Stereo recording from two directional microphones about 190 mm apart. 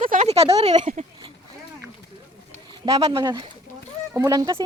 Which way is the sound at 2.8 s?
30° right (ahead or behind).